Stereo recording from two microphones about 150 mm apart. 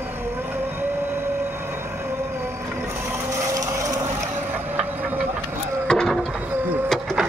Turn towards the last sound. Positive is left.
turn(degrees=0)  # may be behind; listen again after turning